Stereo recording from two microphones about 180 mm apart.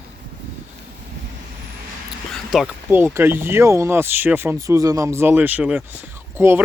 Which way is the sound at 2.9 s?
15° right (ahead or behind).